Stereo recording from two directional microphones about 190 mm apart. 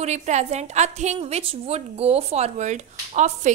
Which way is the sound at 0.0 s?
35° right (ahead or behind).